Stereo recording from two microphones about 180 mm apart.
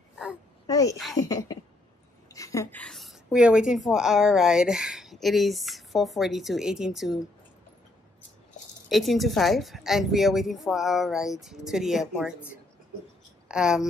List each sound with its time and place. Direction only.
0.7 s a sound: 20° left (ahead or behind)
2.2 s a woman's voice: 20° left (ahead or behind); by 7.2 s centre (ahead or behind)
8.8 s a woman's voice: centre (ahead or behind)
13.5 s speech: 5° right (ahead or behind)